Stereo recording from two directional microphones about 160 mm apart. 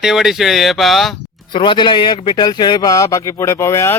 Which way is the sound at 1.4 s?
30° left (ahead or behind).